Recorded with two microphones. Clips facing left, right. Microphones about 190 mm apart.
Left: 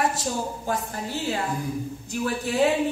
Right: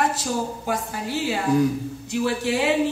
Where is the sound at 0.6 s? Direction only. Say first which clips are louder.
Right 2 dB; 80° right.